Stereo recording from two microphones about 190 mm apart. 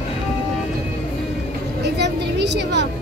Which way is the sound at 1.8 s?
65° right (ahead or behind).